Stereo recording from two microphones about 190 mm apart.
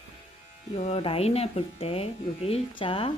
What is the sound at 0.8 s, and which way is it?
Speech, 35° left (ahead or behind).